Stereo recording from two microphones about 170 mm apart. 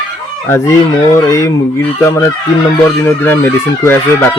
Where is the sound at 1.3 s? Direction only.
15° left (ahead or behind).